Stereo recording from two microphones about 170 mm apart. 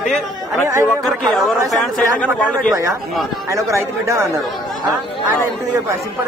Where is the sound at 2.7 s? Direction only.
20° right (ahead or behind).